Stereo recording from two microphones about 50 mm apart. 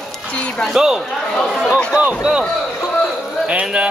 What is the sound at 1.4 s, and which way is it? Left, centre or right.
Speech, centre.